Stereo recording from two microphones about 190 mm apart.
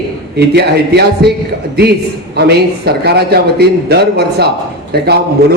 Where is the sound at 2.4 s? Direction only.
60° right (ahead or behind).